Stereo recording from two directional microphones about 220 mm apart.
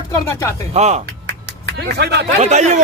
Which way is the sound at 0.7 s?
30° right (ahead or behind).